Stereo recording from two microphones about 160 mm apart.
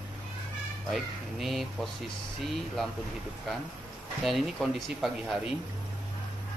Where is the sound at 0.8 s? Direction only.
Centre (ahead or behind).